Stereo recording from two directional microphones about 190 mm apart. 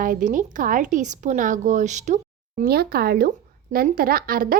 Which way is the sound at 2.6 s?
55° right (ahead or behind).